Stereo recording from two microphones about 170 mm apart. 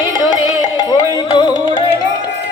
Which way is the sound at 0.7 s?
25° left (ahead or behind).